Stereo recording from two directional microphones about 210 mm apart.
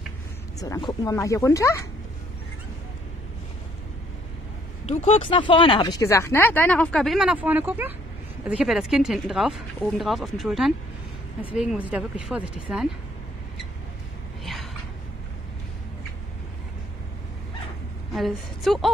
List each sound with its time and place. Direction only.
0.6 s speech: 20° left (ahead or behind)
4.8 s speech: 30° left (ahead or behind); by 12.8 s 5° right (ahead or behind)
14.4 s a sound: centre (ahead or behind)
18.1 s speech: centre (ahead or behind)